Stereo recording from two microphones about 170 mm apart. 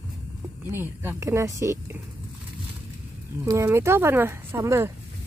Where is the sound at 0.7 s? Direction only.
15° right (ahead or behind).